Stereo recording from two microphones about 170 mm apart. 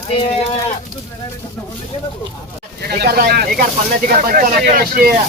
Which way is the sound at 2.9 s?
65° right (ahead or behind).